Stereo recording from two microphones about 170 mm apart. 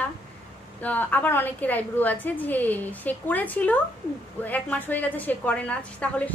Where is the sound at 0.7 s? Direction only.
10° left (ahead or behind).